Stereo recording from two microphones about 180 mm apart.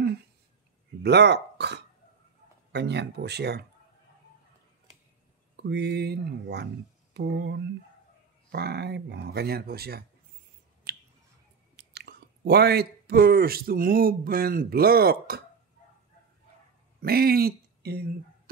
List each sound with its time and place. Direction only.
1.0 s speech: 70° right (ahead or behind)
5.6 s speech: 70° right (ahead or behind)
10.9 s finger snapping: 55° right (ahead or behind)
11.7 s speech: 65° right (ahead or behind)
17.0 s speech: 60° right (ahead or behind)